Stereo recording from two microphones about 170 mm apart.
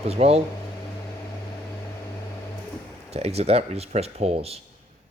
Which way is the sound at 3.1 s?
35° right (ahead or behind).